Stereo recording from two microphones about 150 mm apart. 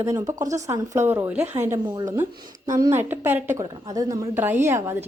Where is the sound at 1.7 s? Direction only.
25° right (ahead or behind).